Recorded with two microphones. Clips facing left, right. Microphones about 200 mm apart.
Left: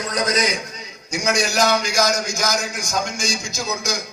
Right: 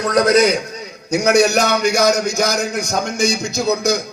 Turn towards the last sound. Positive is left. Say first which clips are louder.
# right 9 dB
turn(degrees=-60)  # may be behind; listen again after turning